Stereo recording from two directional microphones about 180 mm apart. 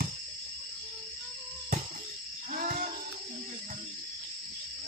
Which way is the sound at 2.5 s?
45° right (ahead or behind).